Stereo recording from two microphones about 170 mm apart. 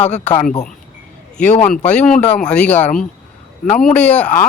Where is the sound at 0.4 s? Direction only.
45° left (ahead or behind).